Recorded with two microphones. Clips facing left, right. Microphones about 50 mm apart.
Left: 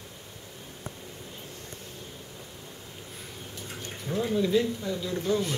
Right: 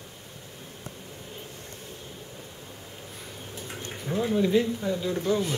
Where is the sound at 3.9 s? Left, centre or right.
Centre.